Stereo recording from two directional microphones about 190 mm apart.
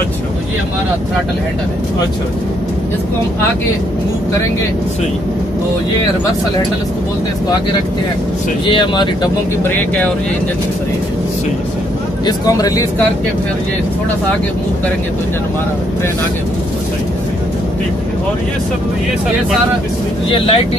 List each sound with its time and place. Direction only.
8.6 s speech: 25° left (ahead or behind)
9.6 s speech: 10° left (ahead or behind)
12.3 s speech: 20° left (ahead or behind)
20.2 s speech: 30° left (ahead or behind)